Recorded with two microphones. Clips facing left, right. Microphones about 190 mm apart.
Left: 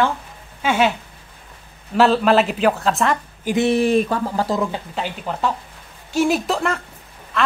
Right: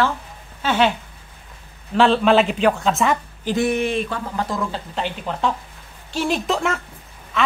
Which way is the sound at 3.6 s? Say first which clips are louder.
Left 5 dB; 35° left (ahead or behind).